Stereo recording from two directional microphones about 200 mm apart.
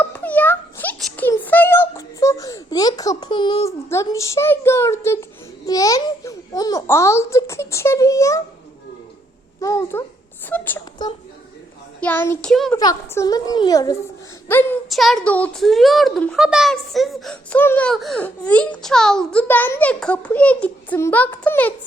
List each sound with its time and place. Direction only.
0.0 s a sound: 10° left (ahead or behind)
5.6 s a child's voice: 20° left (ahead or behind)
9.6 s a child's voice: 15° left (ahead or behind)
11.9 s a child's voice: 10° left (ahead or behind)
12.7 s a child's voice: 15° left (ahead or behind)
14.8 s a child's voice: centre (ahead or behind)